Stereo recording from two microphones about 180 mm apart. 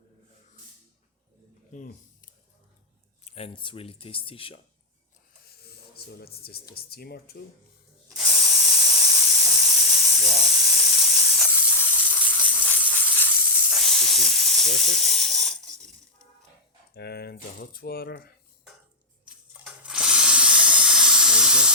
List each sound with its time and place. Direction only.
1.7 s a sound: 50° left (ahead or behind)
3.2 s speech: 35° left (ahead or behind)
5.5 s a sound: 60° left (ahead or behind)
6.1 s speech: 60° left (ahead or behind)
8.1 s spray: centre (ahead or behind)
9.0 s steam: centre (ahead or behind)
11.4 s steam: 10° left (ahead or behind)
13.7 s hiss: centre (ahead or behind)
14.8 s ratchet: centre (ahead or behind)
16.9 s speech: 65° left (ahead or behind)
19.2 s a sound: 5° right (ahead or behind)